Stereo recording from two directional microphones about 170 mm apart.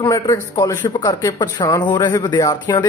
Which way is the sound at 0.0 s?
20° left (ahead or behind).